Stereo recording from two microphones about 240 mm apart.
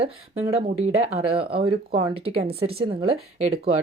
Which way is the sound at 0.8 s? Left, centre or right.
Right.